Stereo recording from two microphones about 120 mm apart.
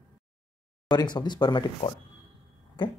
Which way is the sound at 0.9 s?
35° left (ahead or behind).